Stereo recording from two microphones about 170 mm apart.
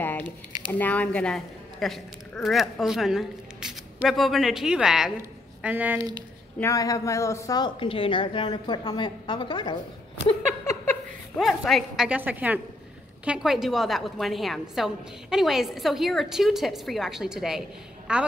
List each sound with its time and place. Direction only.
0.2 s speech: 25° right (ahead or behind)
0.7 s a woman's voice: 10° left (ahead or behind); by 5.9 s 10° right (ahead or behind)
6.6 s a woman's voice: 20° left (ahead or behind)
11.3 s a woman's voice: centre (ahead or behind)